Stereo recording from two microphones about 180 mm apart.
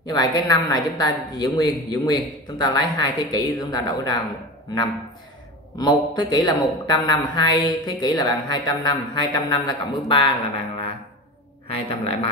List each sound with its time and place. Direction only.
0.0 s speech: 20° left (ahead or behind)
5.8 s speech: 25° left (ahead or behind)
11.6 s speech: 30° left (ahead or behind)